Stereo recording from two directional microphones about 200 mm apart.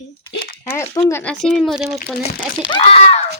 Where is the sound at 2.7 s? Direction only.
25° left (ahead or behind).